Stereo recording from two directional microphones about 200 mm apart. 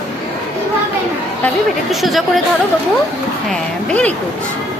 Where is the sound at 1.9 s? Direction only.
Centre (ahead or behind).